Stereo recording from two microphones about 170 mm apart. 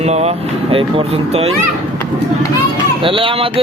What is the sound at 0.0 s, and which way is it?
Speech, 40° right (ahead or behind).